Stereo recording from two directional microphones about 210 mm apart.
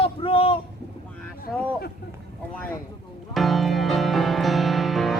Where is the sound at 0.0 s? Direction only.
25° left (ahead or behind).